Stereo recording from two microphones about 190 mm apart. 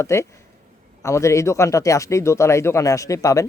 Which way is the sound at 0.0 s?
15° left (ahead or behind).